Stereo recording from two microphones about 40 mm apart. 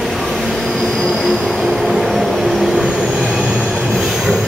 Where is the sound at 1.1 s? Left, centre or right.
Centre.